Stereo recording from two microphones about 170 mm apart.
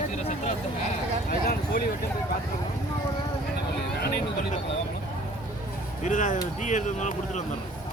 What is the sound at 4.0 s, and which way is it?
Speech, 65° left (ahead or behind).